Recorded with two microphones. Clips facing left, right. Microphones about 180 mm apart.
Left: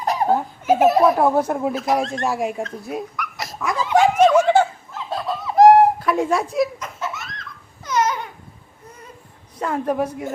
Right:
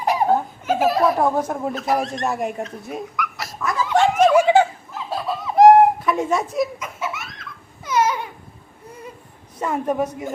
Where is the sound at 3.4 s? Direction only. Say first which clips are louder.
Left 1 dB; 20° left (ahead or behind).